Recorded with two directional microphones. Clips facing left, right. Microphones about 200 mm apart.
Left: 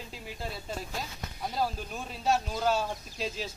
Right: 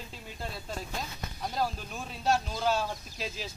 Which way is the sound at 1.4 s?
5° left (ahead or behind).